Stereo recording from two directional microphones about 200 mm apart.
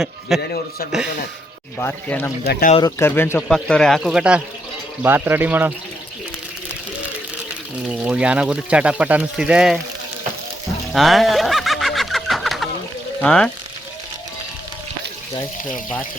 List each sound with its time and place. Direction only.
0.3 s speech: centre (ahead or behind)
1.8 s speech: 10° left (ahead or behind)
2.5 s speech: 45° left (ahead or behind)
3.0 s speech: 10° left (ahead or behind); by 5.7 s 10° right (ahead or behind)
8.0 s speech: 5° right (ahead or behind)
10.9 s a sound: centre (ahead or behind)
13.2 s speech: 5° left (ahead or behind)